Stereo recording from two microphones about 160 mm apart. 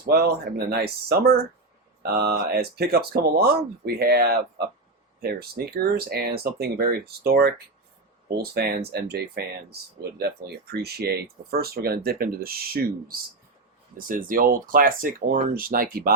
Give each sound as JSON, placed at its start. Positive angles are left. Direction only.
{"t": 0.0, "sound": "speech", "side_deg": -75}
{"t": 2.1, "sound": "speech", "side_deg": -85}